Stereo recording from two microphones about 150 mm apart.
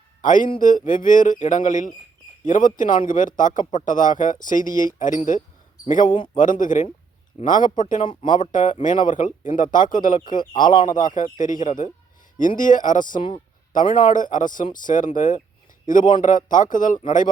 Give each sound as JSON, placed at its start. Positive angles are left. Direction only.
{"t": 0.2, "sound": "speech", "side_deg": 60}
{"t": 8.0, "sound": "speech", "side_deg": 30}
{"t": 8.4, "sound": "speech", "side_deg": 60}
{"t": 10.2, "sound": "speech", "side_deg": 30}
{"t": 10.8, "sound": "speech", "side_deg": 60}